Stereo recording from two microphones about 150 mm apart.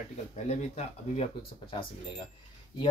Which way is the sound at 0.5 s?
45° left (ahead or behind).